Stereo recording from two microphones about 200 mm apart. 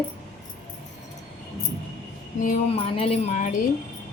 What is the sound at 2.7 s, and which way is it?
Speech, 30° left (ahead or behind).